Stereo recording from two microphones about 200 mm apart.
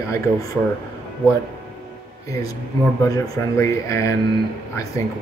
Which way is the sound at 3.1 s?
15° left (ahead or behind).